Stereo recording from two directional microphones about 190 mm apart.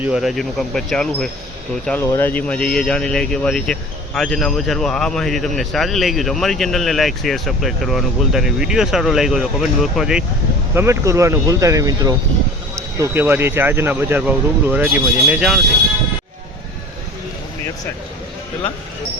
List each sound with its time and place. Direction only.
0.0 s speech: 5° right (ahead or behind)
10.8 s speech: 15° right (ahead or behind)